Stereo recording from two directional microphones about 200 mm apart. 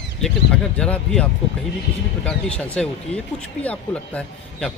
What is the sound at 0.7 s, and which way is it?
Speech, 5° left (ahead or behind).